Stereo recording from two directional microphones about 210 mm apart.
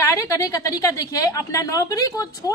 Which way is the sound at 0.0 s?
15° left (ahead or behind).